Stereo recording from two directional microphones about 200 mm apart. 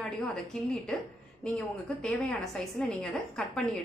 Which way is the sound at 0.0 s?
Centre (ahead or behind).